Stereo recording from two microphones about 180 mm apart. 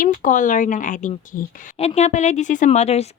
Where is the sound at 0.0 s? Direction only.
45° left (ahead or behind).